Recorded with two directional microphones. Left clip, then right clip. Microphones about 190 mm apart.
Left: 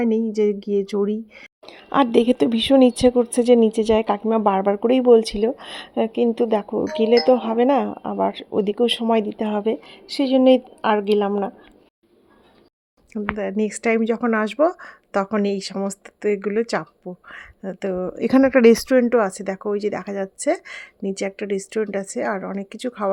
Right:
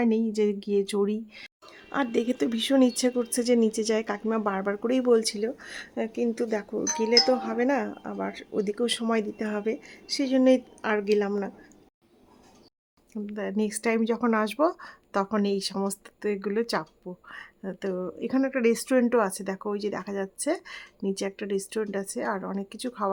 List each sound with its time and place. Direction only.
0.0 s speech: 5° left (ahead or behind)
1.6 s a woman's voice: 25° left (ahead or behind)
13.3 s speech: 10° left (ahead or behind)
18.2 s a woman's voice: 25° left (ahead or behind)
18.8 s speech: 10° left (ahead or behind)